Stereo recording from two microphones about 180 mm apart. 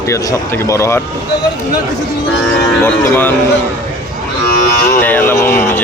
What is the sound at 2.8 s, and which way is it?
Speech, 10° left (ahead or behind).